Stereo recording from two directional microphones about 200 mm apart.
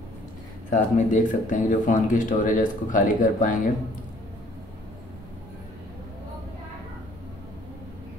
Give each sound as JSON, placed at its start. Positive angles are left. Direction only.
{"t": 0.7, "sound": "speech", "side_deg": 40}